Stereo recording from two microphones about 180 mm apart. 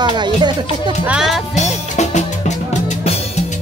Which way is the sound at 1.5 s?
40° left (ahead or behind).